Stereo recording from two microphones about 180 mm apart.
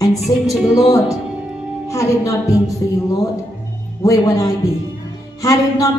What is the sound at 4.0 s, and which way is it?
Speech, 20° left (ahead or behind).